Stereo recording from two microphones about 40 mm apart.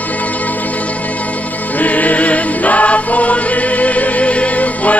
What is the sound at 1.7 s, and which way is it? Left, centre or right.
Music, left.